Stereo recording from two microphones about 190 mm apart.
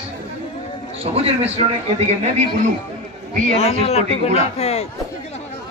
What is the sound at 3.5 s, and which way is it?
A man's voice, 30° left (ahead or behind).